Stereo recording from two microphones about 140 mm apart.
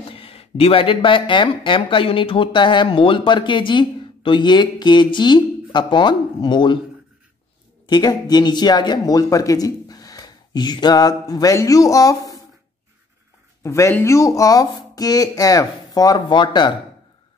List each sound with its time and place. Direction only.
0.1 s speech: 40° left (ahead or behind)
7.8 s speech: 30° left (ahead or behind)
13.6 s speech: 20° left (ahead or behind)